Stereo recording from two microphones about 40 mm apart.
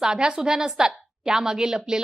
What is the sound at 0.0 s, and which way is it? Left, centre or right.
A woman's voice, centre.